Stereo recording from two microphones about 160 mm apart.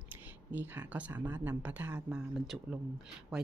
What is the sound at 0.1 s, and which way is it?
Speech, 10° right (ahead or behind).